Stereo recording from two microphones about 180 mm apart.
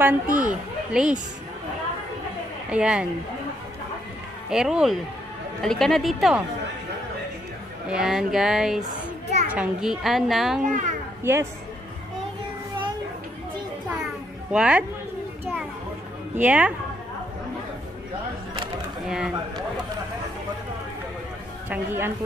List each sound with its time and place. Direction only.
0.0 s a child's voice: 10° right (ahead or behind)
2.7 s a woman's voice: 5° right (ahead or behind)
4.5 s a woman's voice: 5° right (ahead or behind)
7.9 s a woman's voice: 5° right (ahead or behind)
8.8 s a sound: 40° right (ahead or behind)
9.5 s a woman's voice: 5° right (ahead or behind)
10.6 s a child's voice: 45° right (ahead or behind)
11.3 s a woman's voice: 10° right (ahead or behind)
14.5 s a woman's voice: 5° right (ahead or behind)
16.3 s a woman's voice: 10° right (ahead or behind)
19.0 s speech: 5° right (ahead or behind)
21.6 s a woman's voice: 10° right (ahead or behind)